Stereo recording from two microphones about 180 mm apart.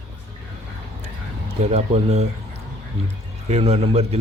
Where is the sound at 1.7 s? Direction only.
35° right (ahead or behind).